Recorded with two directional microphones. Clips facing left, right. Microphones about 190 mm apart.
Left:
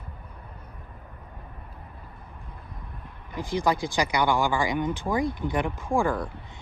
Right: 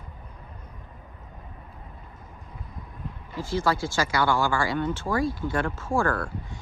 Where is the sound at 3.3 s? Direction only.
15° left (ahead or behind).